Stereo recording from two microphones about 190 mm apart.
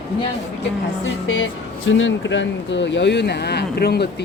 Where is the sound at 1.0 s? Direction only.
90° left.